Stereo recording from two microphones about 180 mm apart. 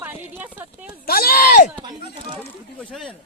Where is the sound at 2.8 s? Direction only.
5° left (ahead or behind).